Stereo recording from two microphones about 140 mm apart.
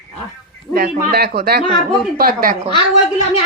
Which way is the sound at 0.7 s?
90° right.